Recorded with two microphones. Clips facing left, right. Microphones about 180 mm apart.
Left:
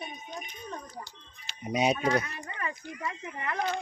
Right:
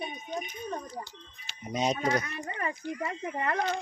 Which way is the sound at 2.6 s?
35° right (ahead or behind).